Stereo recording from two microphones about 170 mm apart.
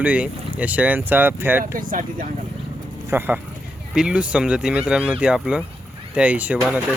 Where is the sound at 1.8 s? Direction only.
55° right (ahead or behind).